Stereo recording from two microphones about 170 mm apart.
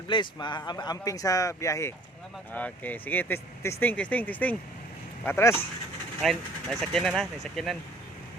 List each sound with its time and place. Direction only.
0.1 s speech: 25° left (ahead or behind)
6.2 s speech: centre (ahead or behind)